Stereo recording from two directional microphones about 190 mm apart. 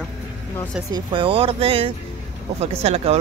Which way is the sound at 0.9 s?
25° right (ahead or behind).